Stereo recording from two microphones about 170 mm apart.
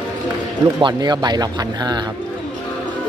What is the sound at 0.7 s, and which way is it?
Speech, 25° right (ahead or behind).